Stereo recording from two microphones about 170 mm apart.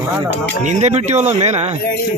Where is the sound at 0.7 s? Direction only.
40° right (ahead or behind).